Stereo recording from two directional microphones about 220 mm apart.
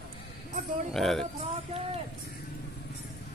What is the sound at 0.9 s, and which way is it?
Speech, centre (ahead or behind).